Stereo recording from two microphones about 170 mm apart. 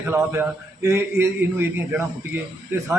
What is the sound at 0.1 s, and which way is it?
A man's voice, 15° right (ahead or behind).